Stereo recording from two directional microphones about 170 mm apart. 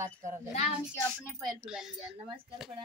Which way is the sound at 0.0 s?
45° right (ahead or behind).